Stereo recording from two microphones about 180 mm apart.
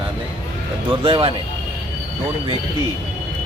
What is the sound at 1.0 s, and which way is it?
Speech, 30° right (ahead or behind).